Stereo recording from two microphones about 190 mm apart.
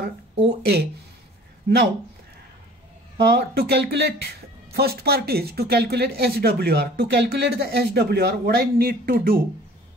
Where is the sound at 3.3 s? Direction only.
60° right (ahead or behind).